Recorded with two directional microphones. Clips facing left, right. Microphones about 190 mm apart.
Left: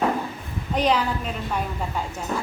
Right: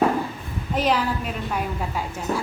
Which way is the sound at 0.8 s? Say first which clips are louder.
Left 1 dB; 5° right (ahead or behind).